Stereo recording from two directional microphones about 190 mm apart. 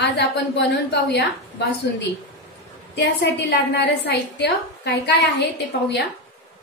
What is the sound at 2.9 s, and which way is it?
A woman's voice, 60° left (ahead or behind).